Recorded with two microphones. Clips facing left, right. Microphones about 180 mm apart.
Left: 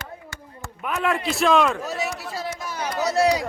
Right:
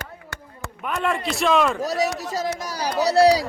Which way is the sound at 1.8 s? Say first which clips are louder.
Right 5 dB; 40° right (ahead or behind).